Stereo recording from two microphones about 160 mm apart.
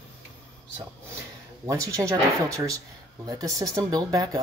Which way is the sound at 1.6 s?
20° right (ahead or behind).